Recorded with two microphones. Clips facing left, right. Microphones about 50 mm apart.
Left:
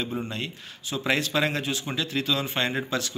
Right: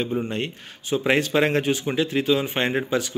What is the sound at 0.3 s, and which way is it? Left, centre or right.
A man's voice, right.